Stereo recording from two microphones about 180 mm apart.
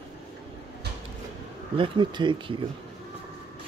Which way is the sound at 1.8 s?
25° right (ahead or behind).